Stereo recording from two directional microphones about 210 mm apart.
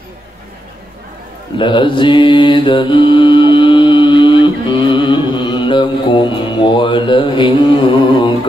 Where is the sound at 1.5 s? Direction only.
25° left (ahead or behind).